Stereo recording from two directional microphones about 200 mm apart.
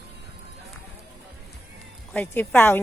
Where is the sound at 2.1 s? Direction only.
10° left (ahead or behind).